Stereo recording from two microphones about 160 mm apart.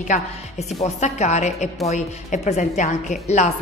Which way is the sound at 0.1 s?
45° left (ahead or behind).